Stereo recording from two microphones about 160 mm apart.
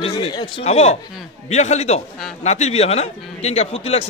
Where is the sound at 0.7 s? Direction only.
40° left (ahead or behind).